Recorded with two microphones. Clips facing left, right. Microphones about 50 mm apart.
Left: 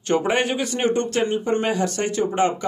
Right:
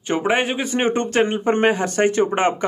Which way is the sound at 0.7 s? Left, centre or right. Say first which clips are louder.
Right 3 dB; right.